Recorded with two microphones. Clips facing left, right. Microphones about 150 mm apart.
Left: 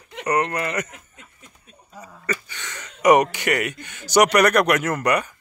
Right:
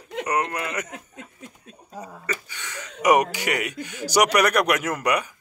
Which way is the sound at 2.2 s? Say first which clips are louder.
Left 5 dB; 10° right (ahead or behind).